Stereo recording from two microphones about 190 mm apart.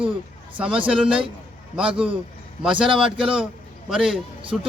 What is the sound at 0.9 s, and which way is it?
Speech, 5° right (ahead or behind).